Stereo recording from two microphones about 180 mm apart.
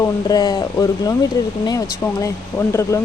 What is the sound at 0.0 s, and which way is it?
Speech, 20° left (ahead or behind).